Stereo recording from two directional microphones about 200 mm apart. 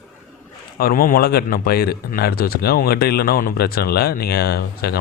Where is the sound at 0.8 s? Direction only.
45° left (ahead or behind).